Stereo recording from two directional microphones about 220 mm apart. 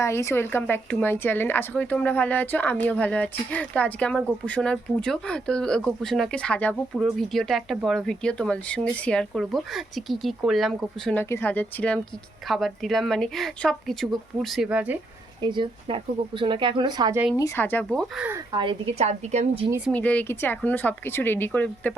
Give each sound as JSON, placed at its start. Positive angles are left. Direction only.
{"t": 0.0, "sound": "a woman's voice", "side_deg": 10}
{"t": 15.4, "sound": "speech", "side_deg": -20}
{"t": 17.3, "sound": "a woman's voice", "side_deg": 15}
{"t": 18.3, "sound": "speech", "side_deg": -20}
{"t": 19.9, "sound": "a woman's voice", "side_deg": 5}